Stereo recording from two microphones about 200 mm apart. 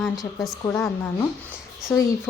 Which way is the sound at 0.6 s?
15° left (ahead or behind).